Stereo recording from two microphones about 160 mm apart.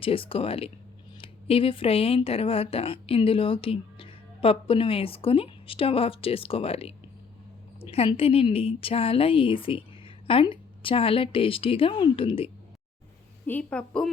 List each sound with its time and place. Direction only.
0.0 s speech: 35° left (ahead or behind)
13.5 s a woman's voice: 10° left (ahead or behind)